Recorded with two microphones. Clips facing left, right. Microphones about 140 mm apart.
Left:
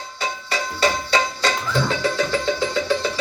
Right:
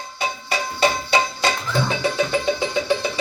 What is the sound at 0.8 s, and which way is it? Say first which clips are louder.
Music: right 1 dB; 15° right (ahead or behind).